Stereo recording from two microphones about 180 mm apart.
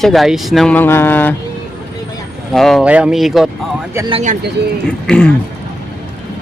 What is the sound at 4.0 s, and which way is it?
Speech, 25° right (ahead or behind).